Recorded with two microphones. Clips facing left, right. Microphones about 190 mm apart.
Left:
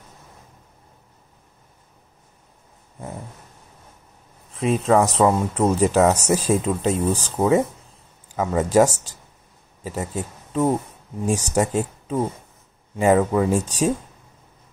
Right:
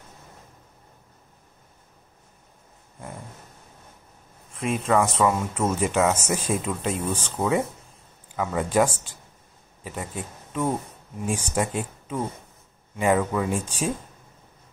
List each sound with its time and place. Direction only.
4.6 s speech: 35° left (ahead or behind)
10.1 s speech: 25° left (ahead or behind)
11.2 s speech: 40° left (ahead or behind)